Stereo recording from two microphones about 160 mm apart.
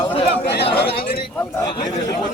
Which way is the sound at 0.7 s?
75° left (ahead or behind).